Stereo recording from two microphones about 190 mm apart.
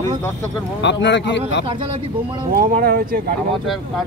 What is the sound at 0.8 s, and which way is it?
Speech, 65° left (ahead or behind).